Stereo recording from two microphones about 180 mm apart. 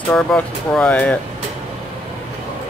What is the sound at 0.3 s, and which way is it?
Speech, 5° left (ahead or behind).